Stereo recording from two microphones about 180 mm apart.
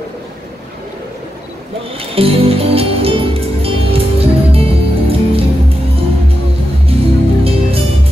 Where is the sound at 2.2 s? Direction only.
30° right (ahead or behind).